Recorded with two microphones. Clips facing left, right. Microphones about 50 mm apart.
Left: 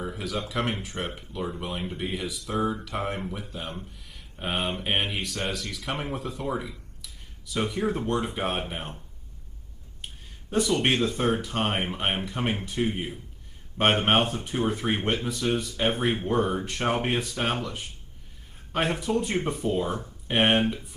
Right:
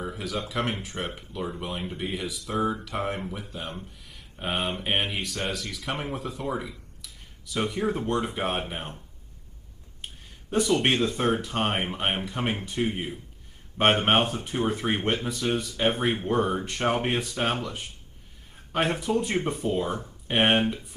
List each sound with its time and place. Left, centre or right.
0.0 s speech: centre
10.7 s speech: centre
18.7 s speech: centre